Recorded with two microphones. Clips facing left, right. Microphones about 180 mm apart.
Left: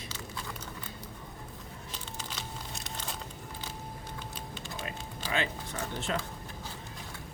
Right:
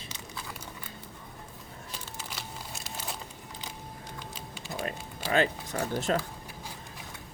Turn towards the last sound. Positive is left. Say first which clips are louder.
# right 5 dB
turn(degrees=-40)  # may be behind; listen again after turning